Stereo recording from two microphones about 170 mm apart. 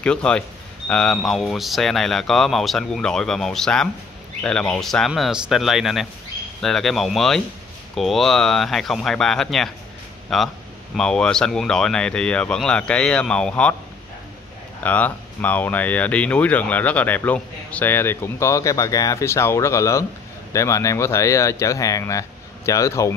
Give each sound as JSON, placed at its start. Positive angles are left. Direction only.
{"t": 0.0, "sound": "speech", "side_deg": 5}
{"t": 14.8, "sound": "speech", "side_deg": 10}